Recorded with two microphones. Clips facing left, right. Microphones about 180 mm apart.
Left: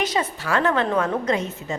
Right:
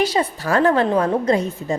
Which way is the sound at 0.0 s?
30° right (ahead or behind).